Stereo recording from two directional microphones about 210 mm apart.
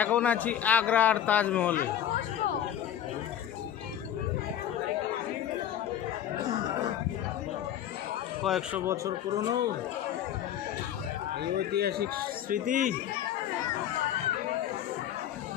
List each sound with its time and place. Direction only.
0.0 s a man's voice: 5° left (ahead or behind)
8.4 s speech: centre (ahead or behind)
8.8 s speech: 15° right (ahead or behind)
11.5 s a man's voice: 50° right (ahead or behind)